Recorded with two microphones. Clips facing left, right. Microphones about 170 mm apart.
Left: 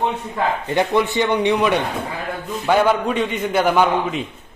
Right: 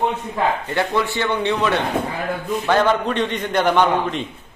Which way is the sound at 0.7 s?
20° left (ahead or behind).